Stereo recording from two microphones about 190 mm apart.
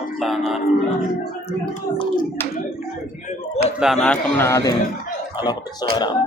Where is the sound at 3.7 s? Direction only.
Centre (ahead or behind); by 4.7 s 15° left (ahead or behind).